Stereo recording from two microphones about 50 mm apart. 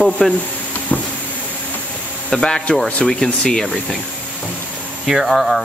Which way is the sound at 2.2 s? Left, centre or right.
Centre.